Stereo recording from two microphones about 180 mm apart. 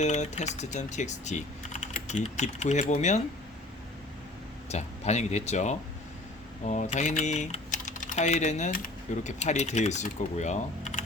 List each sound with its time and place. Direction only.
0.0 s speech: 40° left (ahead or behind)
4.7 s speech: 35° left (ahead or behind)